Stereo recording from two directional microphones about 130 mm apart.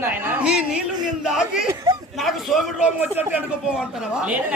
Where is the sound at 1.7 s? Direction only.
30° right (ahead or behind).